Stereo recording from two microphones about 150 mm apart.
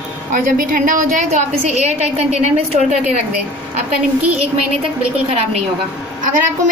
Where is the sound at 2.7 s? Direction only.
50° right (ahead or behind).